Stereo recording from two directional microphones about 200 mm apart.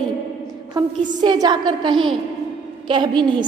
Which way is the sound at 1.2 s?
20° right (ahead or behind).